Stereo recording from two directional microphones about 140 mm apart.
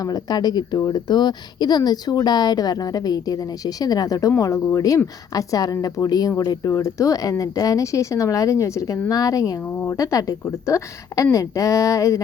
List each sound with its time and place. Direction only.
0.0 s speech: 30° left (ahead or behind)